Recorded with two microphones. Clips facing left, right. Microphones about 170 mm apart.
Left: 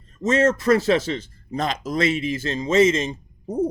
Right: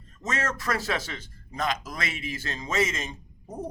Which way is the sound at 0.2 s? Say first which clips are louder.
Left 12 dB; 25° left (ahead or behind).